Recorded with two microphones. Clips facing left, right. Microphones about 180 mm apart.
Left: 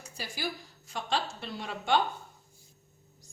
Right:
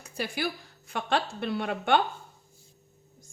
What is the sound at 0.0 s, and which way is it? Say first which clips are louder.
A woman's voice: right 6 dB; 60° right (ahead or behind).